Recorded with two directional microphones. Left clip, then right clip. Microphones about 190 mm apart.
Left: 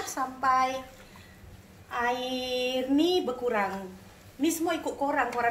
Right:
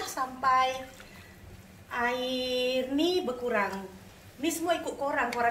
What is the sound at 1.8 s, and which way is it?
A woman's voice, 30° left (ahead or behind).